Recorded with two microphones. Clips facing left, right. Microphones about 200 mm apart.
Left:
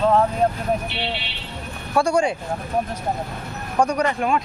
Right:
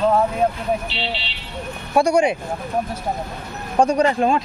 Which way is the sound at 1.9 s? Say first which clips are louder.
Right 3 dB; 20° right (ahead or behind).